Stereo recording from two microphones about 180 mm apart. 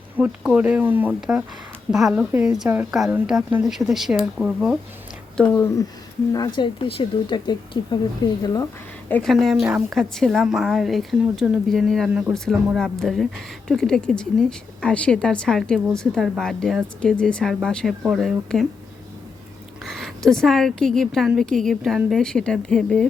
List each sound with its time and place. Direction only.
0.2 s a woman's voice: 10° right (ahead or behind)
5.4 s speech: 15° left (ahead or behind)
9.0 s a woman's voice: 5° left (ahead or behind)
19.8 s a woman's voice: centre (ahead or behind)